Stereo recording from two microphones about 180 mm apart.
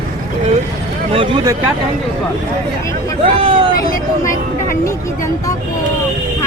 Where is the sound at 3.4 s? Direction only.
30° right (ahead or behind).